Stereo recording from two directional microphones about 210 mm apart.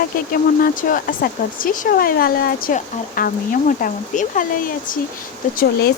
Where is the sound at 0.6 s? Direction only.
40° left (ahead or behind).